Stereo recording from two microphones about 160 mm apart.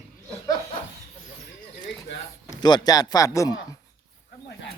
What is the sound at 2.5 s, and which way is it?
Speech, 25° left (ahead or behind).